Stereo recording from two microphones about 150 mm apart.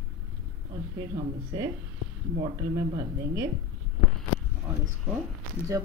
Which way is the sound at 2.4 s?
30° right (ahead or behind).